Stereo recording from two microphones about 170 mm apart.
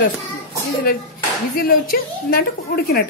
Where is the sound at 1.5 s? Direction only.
60° left (ahead or behind).